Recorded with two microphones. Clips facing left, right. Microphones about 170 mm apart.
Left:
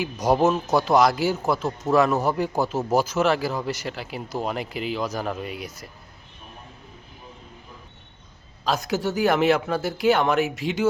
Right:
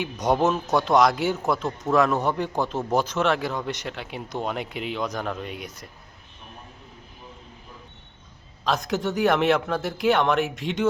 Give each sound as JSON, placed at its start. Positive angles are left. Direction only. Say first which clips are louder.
{"t": 0.0, "sound": "a man's voice", "louder": "left 2 dB", "side_deg": 0}
{"t": 8.6, "sound": "a man's voice", "louder": "left 1 dB", "side_deg": 0}